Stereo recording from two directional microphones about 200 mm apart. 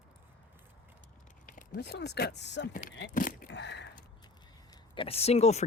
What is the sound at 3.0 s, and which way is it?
Speech, 45° left (ahead or behind).